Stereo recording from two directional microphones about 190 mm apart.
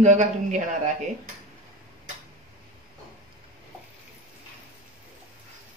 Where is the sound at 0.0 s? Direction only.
40° right (ahead or behind).